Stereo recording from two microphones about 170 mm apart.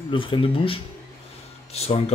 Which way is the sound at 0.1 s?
30° left (ahead or behind).